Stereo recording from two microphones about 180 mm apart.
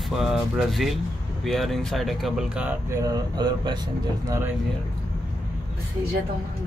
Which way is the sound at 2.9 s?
20° right (ahead or behind).